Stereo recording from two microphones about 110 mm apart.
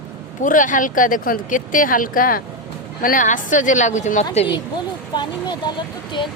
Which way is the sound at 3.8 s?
90° left.